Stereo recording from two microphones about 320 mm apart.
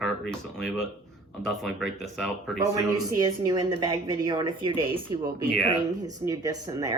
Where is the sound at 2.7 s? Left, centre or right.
Centre.